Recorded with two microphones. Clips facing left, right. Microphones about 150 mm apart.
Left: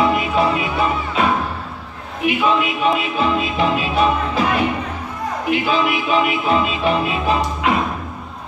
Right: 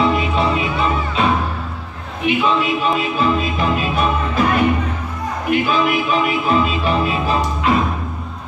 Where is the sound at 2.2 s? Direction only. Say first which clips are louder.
Even; 35° right (ahead or behind).